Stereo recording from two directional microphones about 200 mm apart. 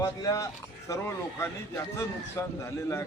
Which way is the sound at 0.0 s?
15° left (ahead or behind).